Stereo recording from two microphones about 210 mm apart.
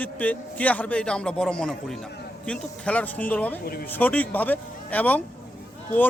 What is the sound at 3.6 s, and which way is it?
Speech, 45° left (ahead or behind).